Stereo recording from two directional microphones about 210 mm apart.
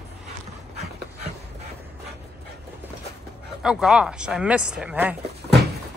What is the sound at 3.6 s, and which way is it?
Speech, 5° right (ahead or behind).